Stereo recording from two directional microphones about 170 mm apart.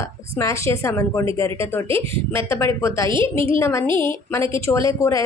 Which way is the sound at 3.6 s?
15° left (ahead or behind).